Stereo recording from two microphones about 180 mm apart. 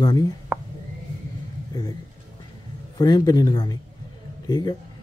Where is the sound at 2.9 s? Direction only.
20° left (ahead or behind).